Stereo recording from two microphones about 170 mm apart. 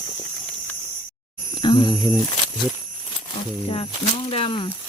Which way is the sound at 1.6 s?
25° left (ahead or behind).